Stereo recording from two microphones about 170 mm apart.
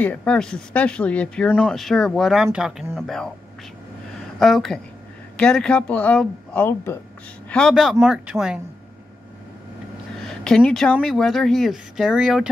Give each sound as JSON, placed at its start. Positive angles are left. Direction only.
{"t": 0.0, "sound": "speech", "side_deg": 10}
{"t": 4.4, "sound": "speech", "side_deg": 0}
{"t": 10.2, "sound": "speech", "side_deg": 5}